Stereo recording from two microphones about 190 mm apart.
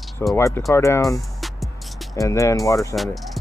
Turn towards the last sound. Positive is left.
turn(degrees=0)  # may be behind; listen again after turning